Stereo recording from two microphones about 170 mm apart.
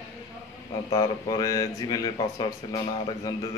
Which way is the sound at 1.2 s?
20° left (ahead or behind).